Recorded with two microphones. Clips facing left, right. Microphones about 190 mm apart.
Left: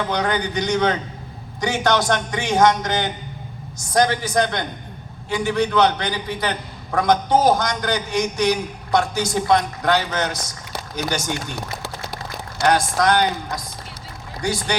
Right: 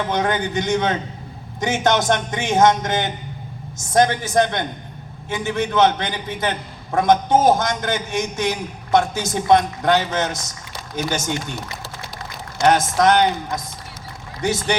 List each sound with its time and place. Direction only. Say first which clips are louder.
0.1 s a man's voice: right 1 dB; 20° right (ahead or behind)
12.5 s a man's voice: right 2 dB; 20° right (ahead or behind)
14.4 s a man's voice: right 2 dB; 20° right (ahead or behind)